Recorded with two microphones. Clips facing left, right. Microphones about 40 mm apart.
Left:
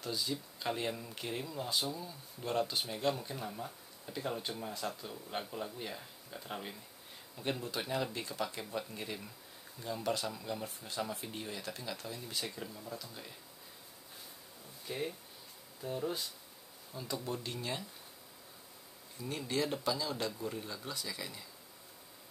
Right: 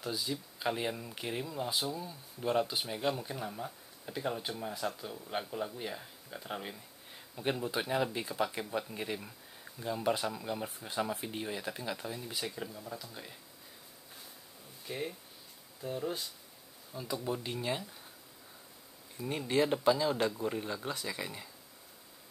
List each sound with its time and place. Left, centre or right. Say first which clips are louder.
0.0 s speech: right 1 dB; centre
14.9 s speech: even; centre
19.1 s speech: right 5 dB; right